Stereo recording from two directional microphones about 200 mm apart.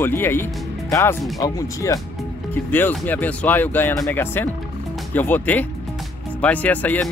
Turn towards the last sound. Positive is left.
turn(degrees=10)  # may be behind; listen again after turning